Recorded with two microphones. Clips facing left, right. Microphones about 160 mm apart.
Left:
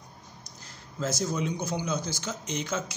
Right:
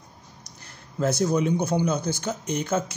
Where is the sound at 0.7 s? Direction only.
60° right (ahead or behind).